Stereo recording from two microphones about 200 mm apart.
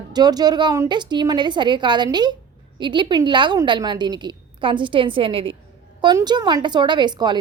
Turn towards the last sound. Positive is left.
turn(degrees=-20)  # may be behind; listen again after turning